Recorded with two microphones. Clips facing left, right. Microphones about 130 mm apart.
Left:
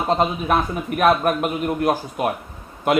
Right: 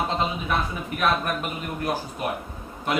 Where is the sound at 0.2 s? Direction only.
50° left (ahead or behind).